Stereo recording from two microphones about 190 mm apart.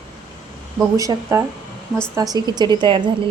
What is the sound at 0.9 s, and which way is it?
A woman's voice, 20° right (ahead or behind).